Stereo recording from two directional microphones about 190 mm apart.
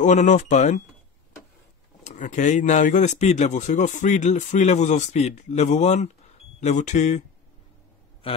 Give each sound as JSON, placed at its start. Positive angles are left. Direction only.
{"t": 0.0, "sound": "speech", "side_deg": 40}
{"t": 2.0, "sound": "speech", "side_deg": 40}